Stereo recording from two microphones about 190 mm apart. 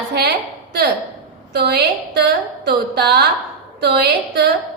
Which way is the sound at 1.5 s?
60° right (ahead or behind).